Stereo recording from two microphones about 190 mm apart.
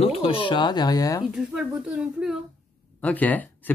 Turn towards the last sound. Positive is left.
turn(degrees=10)  # may be behind; listen again after turning